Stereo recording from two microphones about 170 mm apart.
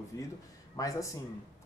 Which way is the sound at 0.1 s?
20° left (ahead or behind).